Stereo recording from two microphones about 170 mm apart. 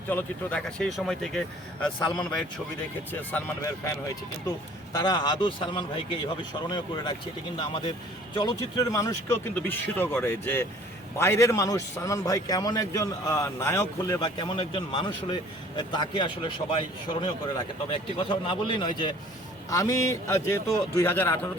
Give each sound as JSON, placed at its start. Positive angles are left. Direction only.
{"t": 0.1, "sound": "a man's voice", "side_deg": 10}
{"t": 17.8, "sound": "a man's voice", "side_deg": 30}